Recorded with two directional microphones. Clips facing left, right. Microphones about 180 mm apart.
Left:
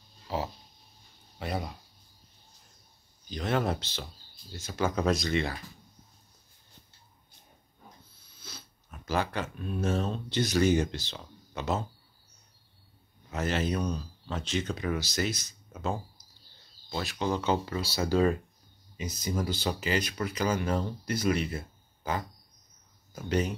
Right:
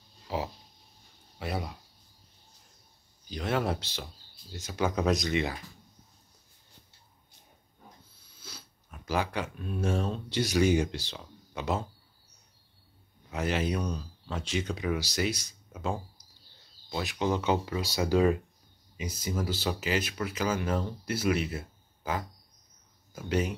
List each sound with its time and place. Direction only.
1.4 s speech: 5° right (ahead or behind)
3.3 s speech: 5° right (ahead or behind)
8.4 s speech: 10° right (ahead or behind)
13.3 s speech: 10° right (ahead or behind)
16.9 s speech: 15° right (ahead or behind)